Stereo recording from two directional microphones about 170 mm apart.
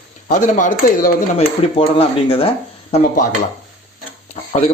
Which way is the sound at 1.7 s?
35° left (ahead or behind).